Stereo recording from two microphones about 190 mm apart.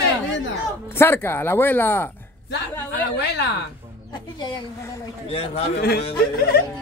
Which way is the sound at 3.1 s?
60° left (ahead or behind).